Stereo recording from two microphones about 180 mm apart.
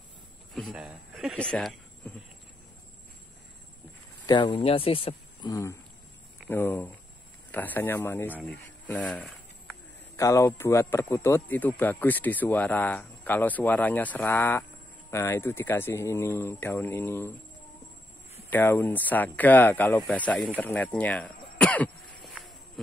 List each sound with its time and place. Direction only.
0.6 s speech: centre (ahead or behind)
4.3 s speech: 25° left (ahead or behind)
18.5 s speech: 10° left (ahead or behind)